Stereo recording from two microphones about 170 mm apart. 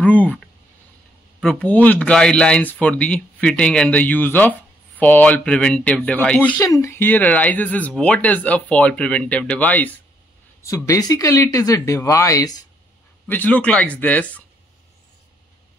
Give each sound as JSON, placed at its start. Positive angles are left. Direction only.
{"t": 0.0, "sound": "speech", "side_deg": 10}
{"t": 10.9, "sound": "speech", "side_deg": 20}
{"t": 13.3, "sound": "speech", "side_deg": 10}